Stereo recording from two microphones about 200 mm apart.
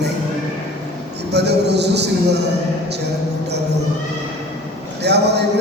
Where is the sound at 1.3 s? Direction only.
55° right (ahead or behind).